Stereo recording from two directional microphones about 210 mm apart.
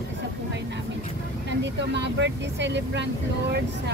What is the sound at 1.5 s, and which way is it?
Speech, 55° right (ahead or behind).